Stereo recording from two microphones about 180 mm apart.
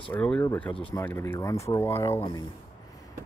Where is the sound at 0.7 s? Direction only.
30° left (ahead or behind).